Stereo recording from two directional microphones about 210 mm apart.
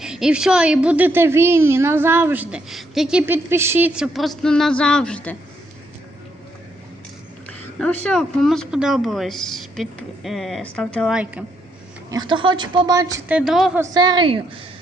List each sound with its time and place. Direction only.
0.0 s a woman's voice: 5° right (ahead or behind)
7.4 s a sound: 5° left (ahead or behind)
8.0 s a woman's voice: 5° left (ahead or behind)
12.1 s a woman's voice: 20° right (ahead or behind); by 13.8 s centre (ahead or behind)
13.8 s speech: 20° right (ahead or behind)